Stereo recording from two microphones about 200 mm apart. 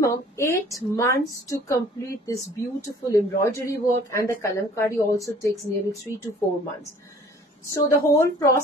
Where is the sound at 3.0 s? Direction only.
15° left (ahead or behind).